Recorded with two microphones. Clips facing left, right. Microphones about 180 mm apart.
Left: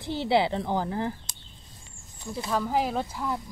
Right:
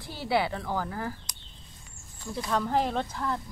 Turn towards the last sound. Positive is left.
turn(degrees=10)  # may be behind; listen again after turning